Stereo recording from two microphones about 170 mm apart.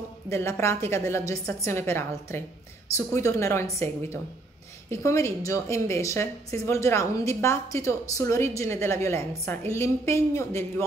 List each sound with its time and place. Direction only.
0.3 s a woman's voice: 15° left (ahead or behind)